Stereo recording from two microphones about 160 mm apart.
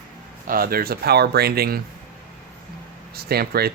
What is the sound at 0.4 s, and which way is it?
Speech, 65° right (ahead or behind).